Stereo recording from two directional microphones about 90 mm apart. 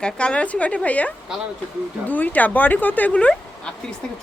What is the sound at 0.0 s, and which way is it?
Speech, 10° left (ahead or behind).